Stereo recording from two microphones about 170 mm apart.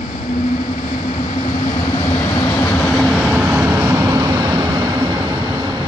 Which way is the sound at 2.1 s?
15° left (ahead or behind).